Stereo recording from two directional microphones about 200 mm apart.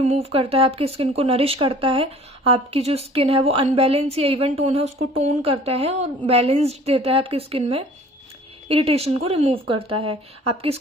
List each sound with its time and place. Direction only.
0.0 s speech: 30° right (ahead or behind)